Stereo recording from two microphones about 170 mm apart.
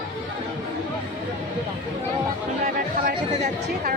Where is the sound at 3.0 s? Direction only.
45° right (ahead or behind).